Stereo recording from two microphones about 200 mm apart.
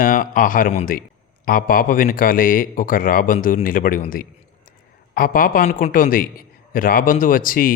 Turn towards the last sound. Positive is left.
turn(degrees=45)  # may be behind; listen again after turning